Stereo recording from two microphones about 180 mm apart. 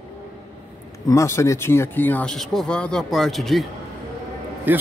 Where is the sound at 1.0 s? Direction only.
15° left (ahead or behind); by 3.6 s centre (ahead or behind).